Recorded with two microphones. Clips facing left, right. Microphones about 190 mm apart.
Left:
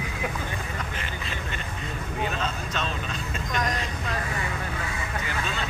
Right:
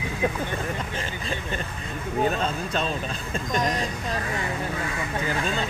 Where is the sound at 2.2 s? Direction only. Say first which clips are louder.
Right 6 dB; 35° right (ahead or behind).